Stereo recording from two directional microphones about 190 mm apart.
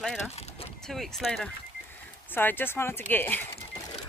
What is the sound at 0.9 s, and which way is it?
Speech, centre (ahead or behind).